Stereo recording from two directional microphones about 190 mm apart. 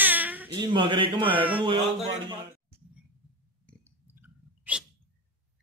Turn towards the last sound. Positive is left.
turn(degrees=-5)  # may be behind; listen again after turning